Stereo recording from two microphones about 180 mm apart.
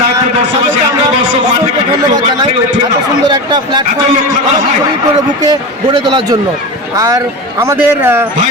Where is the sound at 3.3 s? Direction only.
25° right (ahead or behind).